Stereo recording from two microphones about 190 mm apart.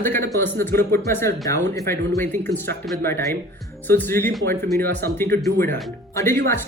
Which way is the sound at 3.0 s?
15° left (ahead or behind).